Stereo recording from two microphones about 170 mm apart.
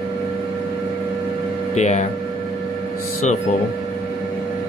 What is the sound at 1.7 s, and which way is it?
Speech, 45° left (ahead or behind).